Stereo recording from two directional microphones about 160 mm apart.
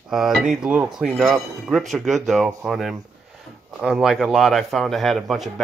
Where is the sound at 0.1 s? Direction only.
Centre (ahead or behind).